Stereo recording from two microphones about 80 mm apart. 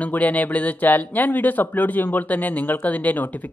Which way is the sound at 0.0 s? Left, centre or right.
Centre.